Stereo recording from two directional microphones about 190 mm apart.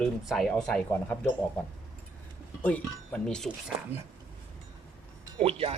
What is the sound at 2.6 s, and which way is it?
Speech, 5° left (ahead or behind).